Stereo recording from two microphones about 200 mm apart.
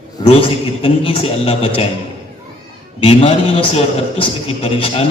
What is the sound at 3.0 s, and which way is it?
A man's voice, 30° left (ahead or behind).